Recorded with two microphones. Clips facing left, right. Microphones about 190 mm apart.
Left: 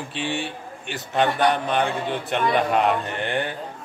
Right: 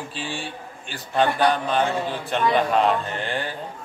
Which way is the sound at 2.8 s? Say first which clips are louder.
Even; 60° left (ahead or behind).